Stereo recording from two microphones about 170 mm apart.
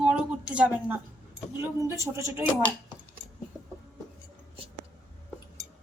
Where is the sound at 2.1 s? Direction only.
15° right (ahead or behind).